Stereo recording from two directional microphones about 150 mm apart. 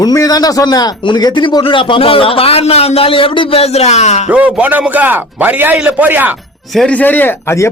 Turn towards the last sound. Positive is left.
turn(degrees=15)  # may be behind; listen again after turning